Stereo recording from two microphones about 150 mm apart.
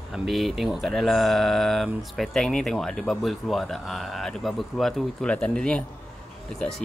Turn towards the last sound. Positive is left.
turn(degrees=0)  # may be behind; listen again after turning